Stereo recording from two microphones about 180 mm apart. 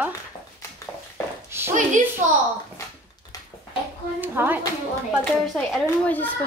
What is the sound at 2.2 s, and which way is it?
Speech, 45° right (ahead or behind).